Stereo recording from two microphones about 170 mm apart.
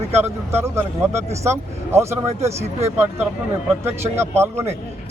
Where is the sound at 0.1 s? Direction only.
15° right (ahead or behind).